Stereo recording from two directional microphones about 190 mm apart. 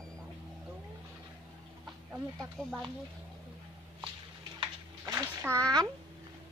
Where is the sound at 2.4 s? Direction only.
Centre (ahead or behind).